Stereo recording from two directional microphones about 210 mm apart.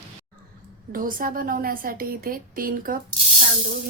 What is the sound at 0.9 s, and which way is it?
Speech, 40° right (ahead or behind).